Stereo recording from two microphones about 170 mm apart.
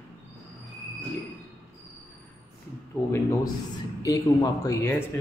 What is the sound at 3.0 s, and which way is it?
A man's voice, 15° left (ahead or behind).